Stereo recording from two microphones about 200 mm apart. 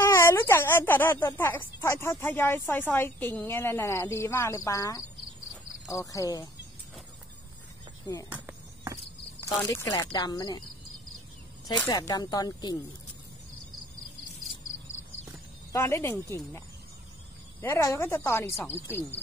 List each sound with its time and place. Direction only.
0.0 s speech: 15° left (ahead or behind)
8.3 s cricket: 10° right (ahead or behind)
9.4 s speech: 15° left (ahead or behind)
11.8 s speech: 15° left (ahead or behind)
15.7 s speech: 15° left (ahead or behind)